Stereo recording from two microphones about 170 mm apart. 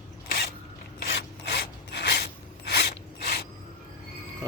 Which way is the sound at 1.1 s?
90° left.